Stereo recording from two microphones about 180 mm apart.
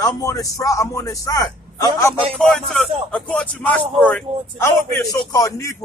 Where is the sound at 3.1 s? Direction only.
5° left (ahead or behind).